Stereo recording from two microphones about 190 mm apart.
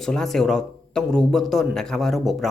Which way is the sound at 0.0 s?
Centre (ahead or behind).